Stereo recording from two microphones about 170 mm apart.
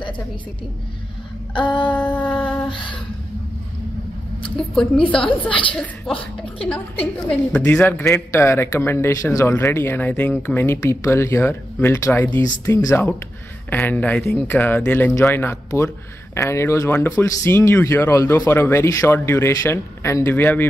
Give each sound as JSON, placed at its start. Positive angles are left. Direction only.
{"t": 1.5, "sound": "a sound", "side_deg": 30}
{"t": 1.9, "sound": "speech", "side_deg": 10}
{"t": 4.4, "sound": "speech", "side_deg": 5}
{"t": 5.5, "sound": "a sound", "side_deg": 30}
{"t": 6.1, "sound": "a man's voice", "side_deg": 5}
{"t": 7.2, "sound": "a man's voice", "side_deg": 5}